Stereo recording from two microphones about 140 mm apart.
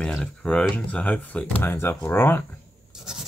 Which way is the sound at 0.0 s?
5° left (ahead or behind).